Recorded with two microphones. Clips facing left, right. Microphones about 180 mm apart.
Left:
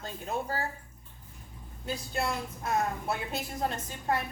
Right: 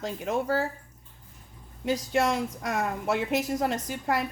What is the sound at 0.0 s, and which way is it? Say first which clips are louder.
Speech: right 6 dB; 90° right.